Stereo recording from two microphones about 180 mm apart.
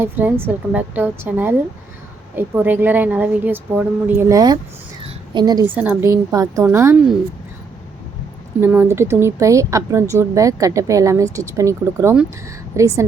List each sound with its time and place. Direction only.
0.0 s a woman's voice: 10° right (ahead or behind)
5.0 s a sound: 25° right (ahead or behind)
5.6 s a woman's voice: 10° right (ahead or behind)
8.6 s a woman's voice: 10° right (ahead or behind)